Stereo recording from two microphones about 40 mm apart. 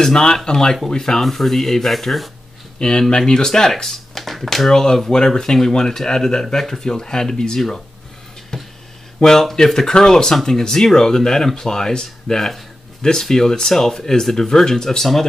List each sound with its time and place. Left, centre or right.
0.0 s speech: centre
2.8 s speech: centre
8.5 s a sound: centre
9.2 s speech: centre